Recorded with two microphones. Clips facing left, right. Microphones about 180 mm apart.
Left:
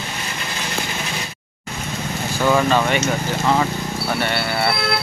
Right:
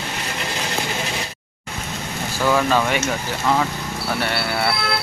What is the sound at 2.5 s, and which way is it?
Speech, centre (ahead or behind).